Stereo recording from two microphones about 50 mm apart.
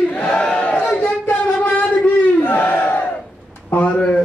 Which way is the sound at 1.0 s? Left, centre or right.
Left.